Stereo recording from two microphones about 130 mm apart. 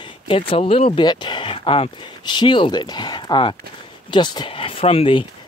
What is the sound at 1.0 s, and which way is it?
Speech, 35° left (ahead or behind).